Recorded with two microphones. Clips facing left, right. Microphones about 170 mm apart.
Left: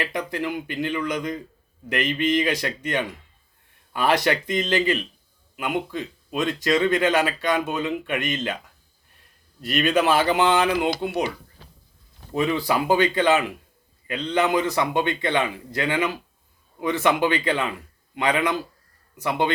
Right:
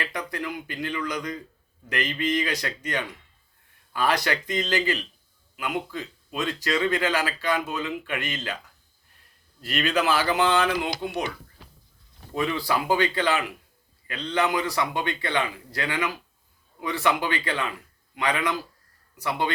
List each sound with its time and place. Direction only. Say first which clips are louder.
0.1 s speech: left 5 dB; 25° left (ahead or behind)
9.6 s speech: left 4 dB; 20° left (ahead or behind)
12.3 s speech: left 3 dB; 20° left (ahead or behind)